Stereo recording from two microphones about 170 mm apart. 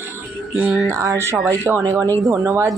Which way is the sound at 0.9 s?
15° right (ahead or behind).